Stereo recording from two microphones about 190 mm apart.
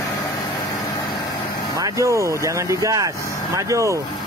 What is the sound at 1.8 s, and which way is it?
Speech, 15° right (ahead or behind).